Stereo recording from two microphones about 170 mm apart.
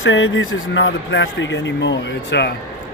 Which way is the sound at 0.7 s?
90° left.